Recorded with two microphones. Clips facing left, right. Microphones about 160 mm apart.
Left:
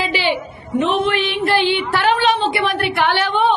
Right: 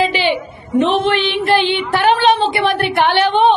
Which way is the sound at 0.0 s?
20° right (ahead or behind).